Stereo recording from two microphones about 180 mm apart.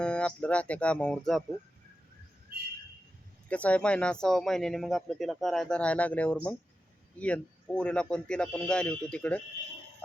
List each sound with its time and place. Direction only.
0.0 s speech: 5° left (ahead or behind)
3.5 s speech: 5° left (ahead or behind)